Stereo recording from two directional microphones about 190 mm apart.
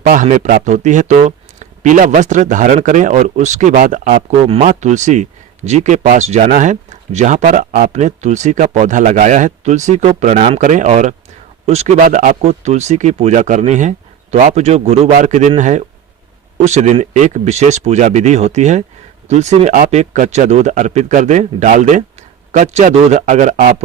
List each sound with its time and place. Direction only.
0.0 s speech: 45° right (ahead or behind)